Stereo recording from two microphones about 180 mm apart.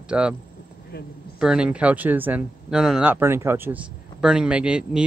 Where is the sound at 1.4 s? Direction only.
5° right (ahead or behind).